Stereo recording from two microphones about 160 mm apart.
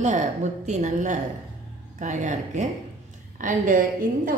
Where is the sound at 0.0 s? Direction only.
45° right (ahead or behind).